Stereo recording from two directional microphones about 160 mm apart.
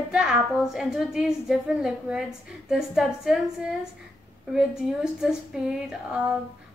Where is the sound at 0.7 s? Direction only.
5° right (ahead or behind).